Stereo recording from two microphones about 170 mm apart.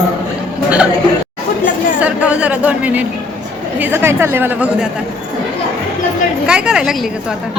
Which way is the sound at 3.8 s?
10° right (ahead or behind).